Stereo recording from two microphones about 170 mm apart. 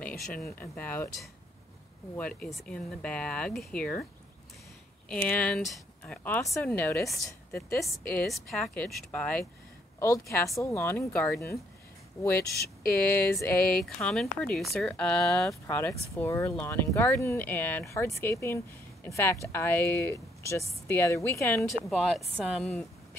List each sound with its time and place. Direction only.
0.7 s speech: 10° left (ahead or behind)
2.1 s speech: 5° left (ahead or behind)
5.1 s speech: 5° left (ahead or behind)
7.8 s a woman's voice: centre (ahead or behind)
15.6 s speech: 15° left (ahead or behind)
21.5 s a woman's voice: centre (ahead or behind)